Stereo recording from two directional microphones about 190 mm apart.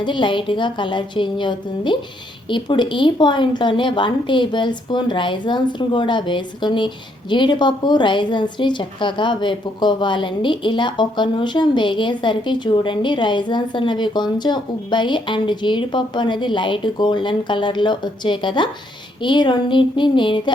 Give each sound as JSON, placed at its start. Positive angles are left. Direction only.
{"t": 0.0, "sound": "a woman's voice", "side_deg": 25}